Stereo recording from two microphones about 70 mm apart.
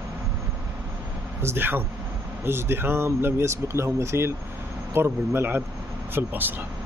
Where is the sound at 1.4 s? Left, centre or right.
Right.